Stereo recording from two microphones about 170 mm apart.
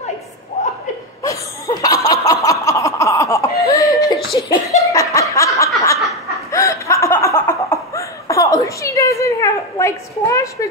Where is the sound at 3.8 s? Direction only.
20° left (ahead or behind).